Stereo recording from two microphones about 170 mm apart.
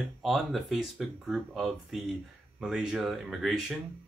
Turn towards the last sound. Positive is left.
turn(degrees=0)  # may be behind; listen again after turning